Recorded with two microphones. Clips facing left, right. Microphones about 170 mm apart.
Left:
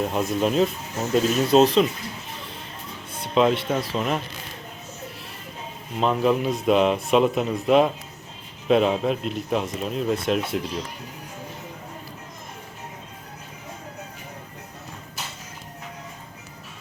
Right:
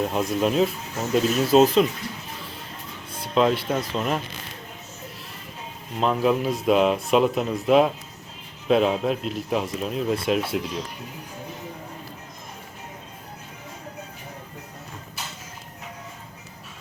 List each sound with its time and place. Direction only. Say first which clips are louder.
0.0 s speech: even; centre (ahead or behind)
3.3 s speech: left 1 dB; centre (ahead or behind)
6.0 s speech: even; centre (ahead or behind)